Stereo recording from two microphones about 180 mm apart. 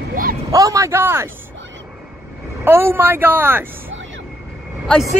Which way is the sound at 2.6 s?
15° right (ahead or behind).